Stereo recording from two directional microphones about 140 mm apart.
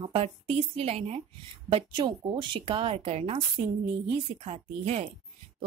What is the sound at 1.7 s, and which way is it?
A woman's voice, 35° right (ahead or behind).